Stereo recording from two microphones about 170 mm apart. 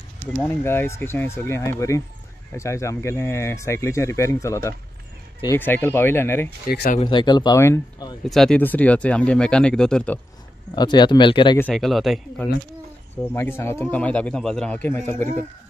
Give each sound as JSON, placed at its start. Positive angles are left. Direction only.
{"t": 0.3, "sound": "speech", "side_deg": 10}
{"t": 6.7, "sound": "speech", "side_deg": 65}
{"t": 7.0, "sound": "speech", "side_deg": 30}
{"t": 8.3, "sound": "speech", "side_deg": 5}
{"t": 10.7, "sound": "speech", "side_deg": 25}
{"t": 11.7, "sound": "speech", "side_deg": 0}
{"t": 13.1, "sound": "speech", "side_deg": 15}
{"t": 15.1, "sound": "speech", "side_deg": -45}